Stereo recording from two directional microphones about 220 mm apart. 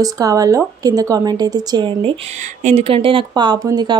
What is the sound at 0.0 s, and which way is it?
Speech, 15° right (ahead or behind).